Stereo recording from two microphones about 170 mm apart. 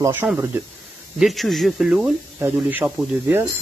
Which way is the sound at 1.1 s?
Centre (ahead or behind).